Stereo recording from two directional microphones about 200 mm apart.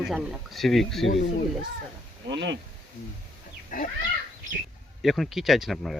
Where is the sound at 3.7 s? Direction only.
45° left (ahead or behind).